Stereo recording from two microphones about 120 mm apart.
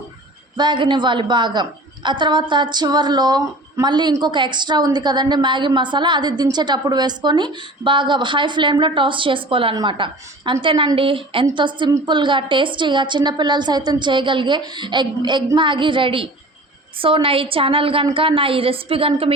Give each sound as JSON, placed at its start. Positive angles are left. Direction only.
{"t": 0.5, "sound": "a woman's voice", "side_deg": -40}